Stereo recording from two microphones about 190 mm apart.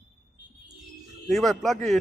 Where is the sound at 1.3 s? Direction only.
Centre (ahead or behind).